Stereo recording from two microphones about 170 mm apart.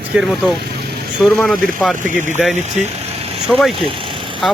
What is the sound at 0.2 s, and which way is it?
Speech, centre (ahead or behind).